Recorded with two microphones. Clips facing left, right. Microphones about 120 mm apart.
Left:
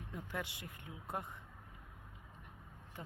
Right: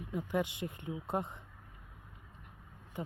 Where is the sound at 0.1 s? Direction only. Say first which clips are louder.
Right 10 dB; 15° right (ahead or behind).